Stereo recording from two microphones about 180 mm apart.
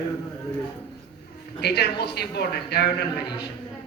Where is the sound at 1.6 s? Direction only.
65° left (ahead or behind).